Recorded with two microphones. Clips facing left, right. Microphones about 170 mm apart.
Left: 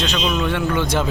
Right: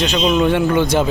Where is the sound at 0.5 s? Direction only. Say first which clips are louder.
Right 5 dB; 15° right (ahead or behind).